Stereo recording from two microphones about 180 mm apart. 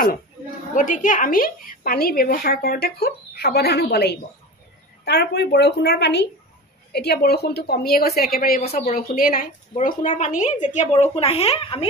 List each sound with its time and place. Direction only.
0.7 s a woman's voice: 45° left (ahead or behind)